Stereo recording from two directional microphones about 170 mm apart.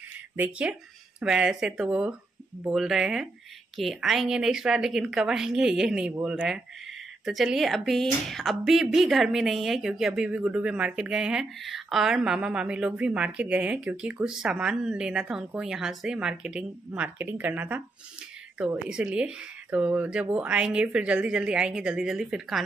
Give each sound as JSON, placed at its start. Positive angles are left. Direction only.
{"t": 0.4, "sound": "speech", "side_deg": -5}